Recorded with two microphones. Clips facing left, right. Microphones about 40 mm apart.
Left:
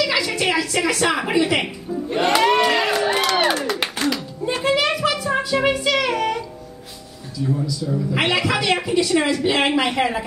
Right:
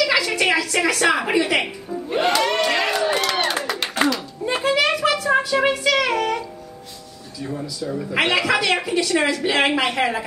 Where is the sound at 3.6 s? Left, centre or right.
Centre.